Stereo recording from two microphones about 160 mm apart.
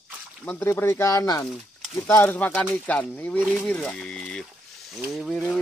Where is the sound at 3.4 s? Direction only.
5° right (ahead or behind).